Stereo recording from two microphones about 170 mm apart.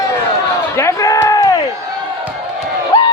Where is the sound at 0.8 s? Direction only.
20° left (ahead or behind).